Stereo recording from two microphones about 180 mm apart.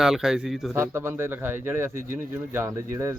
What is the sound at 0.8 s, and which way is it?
Speech, 15° right (ahead or behind).